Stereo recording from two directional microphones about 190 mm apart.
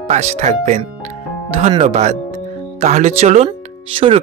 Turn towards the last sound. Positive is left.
turn(degrees=-25)  # may be behind; listen again after turning